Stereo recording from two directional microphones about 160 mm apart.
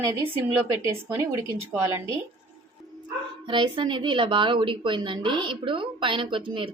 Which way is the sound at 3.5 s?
30° right (ahead or behind).